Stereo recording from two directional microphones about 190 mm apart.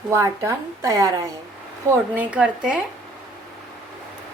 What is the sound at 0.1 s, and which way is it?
A woman's voice, 15° right (ahead or behind).